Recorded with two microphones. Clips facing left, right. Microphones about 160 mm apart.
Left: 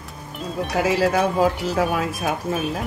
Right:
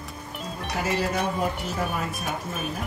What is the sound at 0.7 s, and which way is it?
Speech, 90° left.